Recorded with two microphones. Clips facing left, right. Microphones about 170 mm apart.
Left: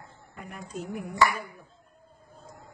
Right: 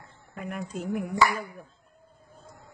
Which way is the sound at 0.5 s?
60° right (ahead or behind).